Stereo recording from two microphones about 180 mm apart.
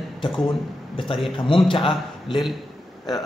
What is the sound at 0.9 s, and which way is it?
A man's voice, 30° left (ahead or behind).